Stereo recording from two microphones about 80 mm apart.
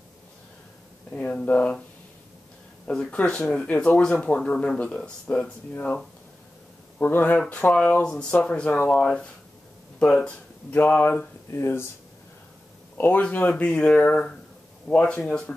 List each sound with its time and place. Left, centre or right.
1.1 s speech: centre
2.9 s speech: centre
10.7 s speech: left
12.9 s speech: left
13.7 s speech: centre